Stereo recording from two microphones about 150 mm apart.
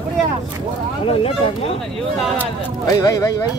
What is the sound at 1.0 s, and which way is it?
Speech, 40° left (ahead or behind).